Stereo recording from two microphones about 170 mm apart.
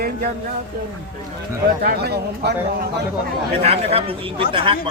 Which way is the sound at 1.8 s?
70° right (ahead or behind).